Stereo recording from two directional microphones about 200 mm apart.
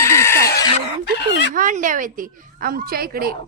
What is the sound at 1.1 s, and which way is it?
Speech, 60° left (ahead or behind).